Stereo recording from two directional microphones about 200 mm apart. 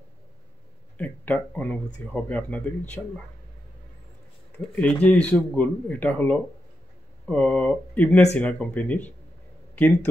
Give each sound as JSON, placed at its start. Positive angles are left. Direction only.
{"t": 0.9, "sound": "speech", "side_deg": 10}
{"t": 4.7, "sound": "speech", "side_deg": 5}